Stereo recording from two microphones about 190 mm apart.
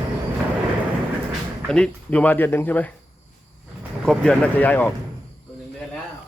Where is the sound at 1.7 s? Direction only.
5° left (ahead or behind).